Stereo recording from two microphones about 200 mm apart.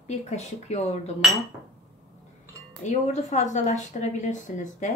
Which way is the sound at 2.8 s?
35° left (ahead or behind).